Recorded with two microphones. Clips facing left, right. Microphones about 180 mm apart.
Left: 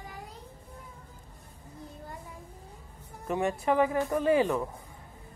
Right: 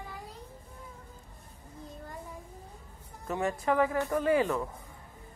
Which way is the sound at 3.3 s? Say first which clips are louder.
Left 2 dB; 15° left (ahead or behind).